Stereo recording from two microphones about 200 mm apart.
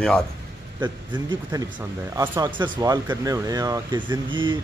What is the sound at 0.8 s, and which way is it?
Speech, 20° right (ahead or behind).